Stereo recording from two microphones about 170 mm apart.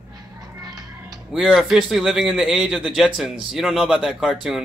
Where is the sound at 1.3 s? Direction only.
5° right (ahead or behind).